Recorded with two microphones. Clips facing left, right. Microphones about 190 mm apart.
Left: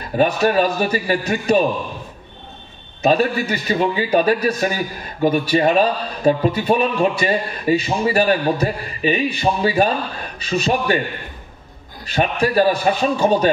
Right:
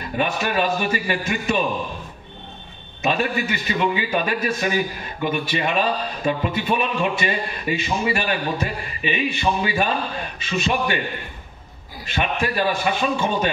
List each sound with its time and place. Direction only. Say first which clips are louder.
0.2 s a man's voice: left 6 dB; 40° left (ahead or behind)
3.0 s a man's voice: left 6 dB; 40° left (ahead or behind)
12.1 s a man's voice: left 5 dB; 40° left (ahead or behind)